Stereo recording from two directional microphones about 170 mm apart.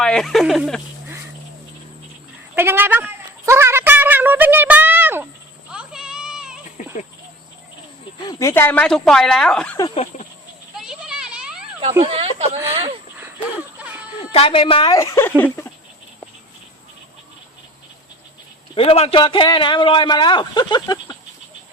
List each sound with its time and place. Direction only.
0.0 s speech: 5° left (ahead or behind)
2.6 s a sound: 10° right (ahead or behind)
5.7 s children playing: 5° right (ahead or behind)
8.2 s speech: 20° left (ahead or behind); by 9.7 s 5° left (ahead or behind)
9.9 s speech: 35° left (ahead or behind)
10.8 s a sound: 5° right (ahead or behind)
12.0 s speech: 35° right (ahead or behind)
14.2 s a man's voice: 30° left (ahead or behind); by 15.7 s 10° left (ahead or behind)
18.7 s a man's voice: 35° left (ahead or behind)